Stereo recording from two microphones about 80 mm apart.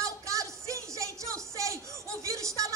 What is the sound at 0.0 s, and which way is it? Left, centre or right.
Music, right.